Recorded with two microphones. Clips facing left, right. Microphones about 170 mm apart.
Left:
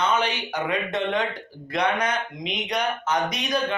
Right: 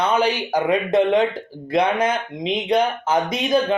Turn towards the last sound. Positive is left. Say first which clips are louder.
# right 6 dB
turn(degrees=-30)  # may be behind; listen again after turning